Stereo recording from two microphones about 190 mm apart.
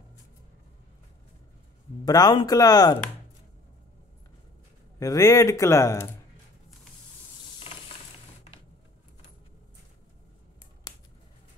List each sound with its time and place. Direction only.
2.0 s speech: 20° left (ahead or behind)
4.9 s a man's voice: 15° left (ahead or behind)